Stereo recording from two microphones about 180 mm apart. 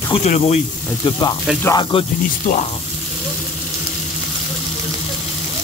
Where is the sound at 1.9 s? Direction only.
30° left (ahead or behind).